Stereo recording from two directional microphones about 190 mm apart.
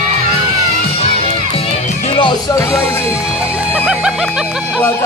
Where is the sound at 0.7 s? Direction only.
30° left (ahead or behind).